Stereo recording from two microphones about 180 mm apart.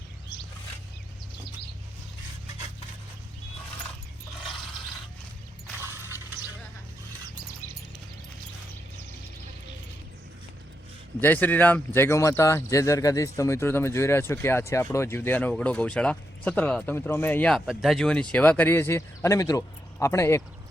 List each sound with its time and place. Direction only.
5.7 s mechanisms: 15° right (ahead or behind)
7.6 s a sound: 45° left (ahead or behind)
11.2 s speech: 10° left (ahead or behind)